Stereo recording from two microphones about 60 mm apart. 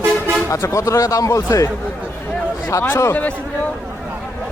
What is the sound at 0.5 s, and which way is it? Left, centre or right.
Speech, left.